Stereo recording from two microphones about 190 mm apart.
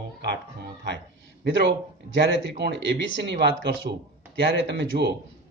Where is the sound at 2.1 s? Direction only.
65° right (ahead or behind).